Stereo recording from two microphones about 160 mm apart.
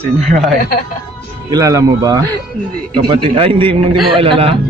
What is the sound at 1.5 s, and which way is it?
A man's voice, 20° right (ahead or behind).